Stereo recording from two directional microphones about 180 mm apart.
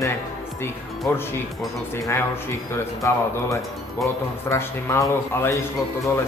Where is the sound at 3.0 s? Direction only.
15° left (ahead or behind).